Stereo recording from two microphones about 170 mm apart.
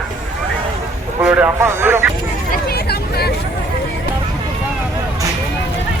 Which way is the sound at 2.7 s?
70° left (ahead or behind).